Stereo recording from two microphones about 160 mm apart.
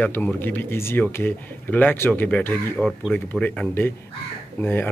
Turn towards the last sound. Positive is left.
turn(degrees=10)  # may be behind; listen again after turning